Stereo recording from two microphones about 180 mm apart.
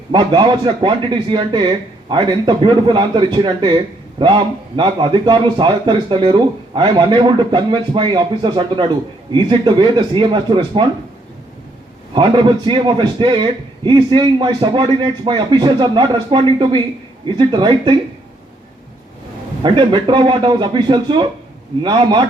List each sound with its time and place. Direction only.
0.1 s a man's voice: 25° right (ahead or behind)
12.1 s a man's voice: 25° right (ahead or behind)
19.6 s a man's voice: 25° right (ahead or behind)